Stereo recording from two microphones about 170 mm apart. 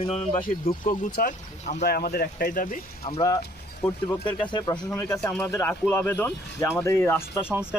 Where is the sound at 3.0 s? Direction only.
30° left (ahead or behind).